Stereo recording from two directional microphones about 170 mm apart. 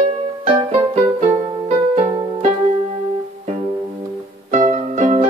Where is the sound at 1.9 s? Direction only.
40° right (ahead or behind).